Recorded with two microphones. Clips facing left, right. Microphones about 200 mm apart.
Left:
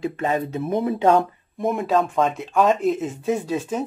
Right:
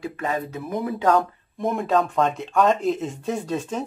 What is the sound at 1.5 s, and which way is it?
Speech, centre (ahead or behind).